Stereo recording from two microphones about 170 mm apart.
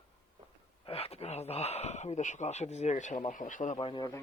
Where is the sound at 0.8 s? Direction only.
35° left (ahead or behind).